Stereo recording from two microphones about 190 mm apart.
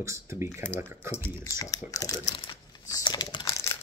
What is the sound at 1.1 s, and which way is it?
Speech, 15° left (ahead or behind).